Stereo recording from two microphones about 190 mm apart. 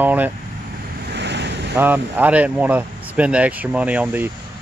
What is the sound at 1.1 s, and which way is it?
Vehicle, 65° right (ahead or behind).